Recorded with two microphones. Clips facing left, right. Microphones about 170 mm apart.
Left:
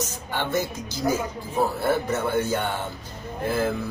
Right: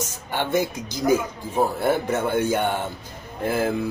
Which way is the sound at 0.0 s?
10° right (ahead or behind).